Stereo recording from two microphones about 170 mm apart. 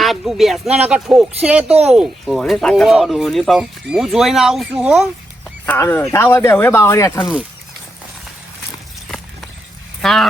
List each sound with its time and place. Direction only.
0.0 s speech: centre (ahead or behind)
5.6 s speech: 15° left (ahead or behind)
9.0 s a sound: centre (ahead or behind)
10.0 s speech: centre (ahead or behind)